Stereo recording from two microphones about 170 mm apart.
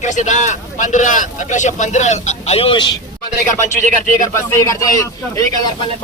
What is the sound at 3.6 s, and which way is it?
Speech, 50° left (ahead or behind).